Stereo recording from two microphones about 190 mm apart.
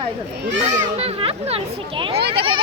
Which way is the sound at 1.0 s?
30° right (ahead or behind).